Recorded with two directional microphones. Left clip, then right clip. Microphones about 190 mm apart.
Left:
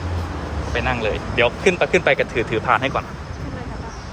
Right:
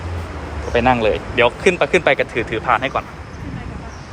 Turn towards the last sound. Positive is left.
turn(degrees=10)  # may be behind; listen again after turning